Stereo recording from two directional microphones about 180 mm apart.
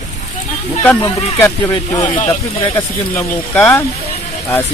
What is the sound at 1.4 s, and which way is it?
Speech, 15° left (ahead or behind).